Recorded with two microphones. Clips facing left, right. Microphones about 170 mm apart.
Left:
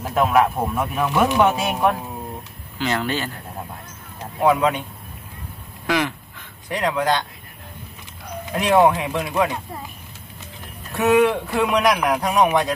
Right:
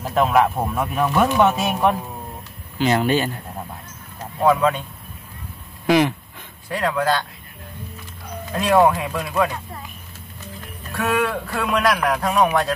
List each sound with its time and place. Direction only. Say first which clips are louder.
0.0 s speech: even; centre (ahead or behind)
1.6 s speech: right 1 dB; centre (ahead or behind)
2.8 s speech: right 5 dB; 15° right (ahead or behind)
4.4 s speech: even; 15° left (ahead or behind)
5.9 s speech: right 5 dB; 20° right (ahead or behind)
6.7 s a man's voice: even; 20° left (ahead or behind)
8.5 s a man's voice: even; 20° left (ahead or behind)
11.0 s a man's voice: left 5 dB; 20° left (ahead or behind)